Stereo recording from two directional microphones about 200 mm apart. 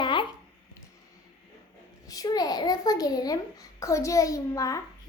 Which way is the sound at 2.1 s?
15° left (ahead or behind).